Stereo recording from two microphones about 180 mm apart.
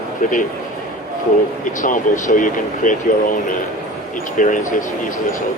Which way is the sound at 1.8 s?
45° left (ahead or behind).